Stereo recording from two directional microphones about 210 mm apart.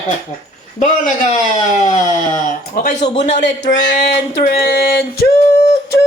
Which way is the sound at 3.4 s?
55° left (ahead or behind).